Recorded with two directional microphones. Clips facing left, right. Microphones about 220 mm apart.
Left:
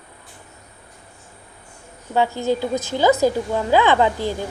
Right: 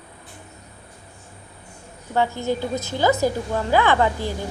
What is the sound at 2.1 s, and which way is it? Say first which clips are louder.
A woman's voice: left 2 dB; 15° left (ahead or behind).